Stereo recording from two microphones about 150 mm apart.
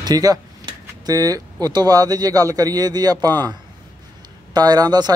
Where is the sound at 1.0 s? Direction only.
25° right (ahead or behind).